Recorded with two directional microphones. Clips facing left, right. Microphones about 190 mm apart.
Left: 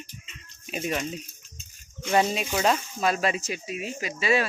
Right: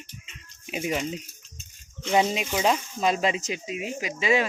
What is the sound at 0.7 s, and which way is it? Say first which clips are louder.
Speech: right 1 dB; 15° right (ahead or behind).